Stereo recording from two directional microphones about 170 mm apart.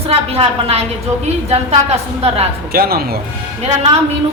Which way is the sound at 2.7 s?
65° right (ahead or behind).